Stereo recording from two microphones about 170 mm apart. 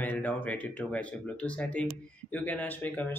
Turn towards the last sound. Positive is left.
turn(degrees=10)  # may be behind; listen again after turning